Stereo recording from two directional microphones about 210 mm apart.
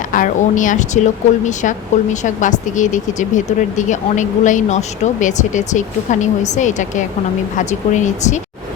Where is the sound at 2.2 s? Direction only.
35° left (ahead or behind).